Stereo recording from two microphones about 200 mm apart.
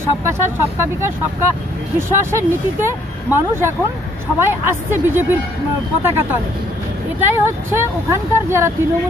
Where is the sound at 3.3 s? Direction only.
10° right (ahead or behind).